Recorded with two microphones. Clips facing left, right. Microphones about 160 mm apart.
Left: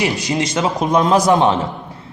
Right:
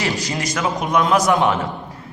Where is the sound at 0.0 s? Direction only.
20° left (ahead or behind).